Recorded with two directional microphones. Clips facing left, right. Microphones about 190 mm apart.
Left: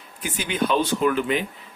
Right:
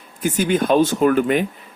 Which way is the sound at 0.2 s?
45° right (ahead or behind).